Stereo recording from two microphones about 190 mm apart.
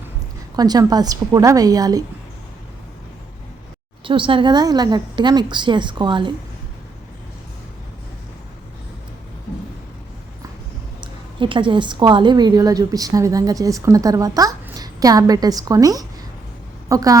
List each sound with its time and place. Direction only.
0.5 s a woman's voice: 20° right (ahead or behind)
4.0 s a woman's voice: 25° right (ahead or behind)
11.0 s a woman's voice: 25° right (ahead or behind)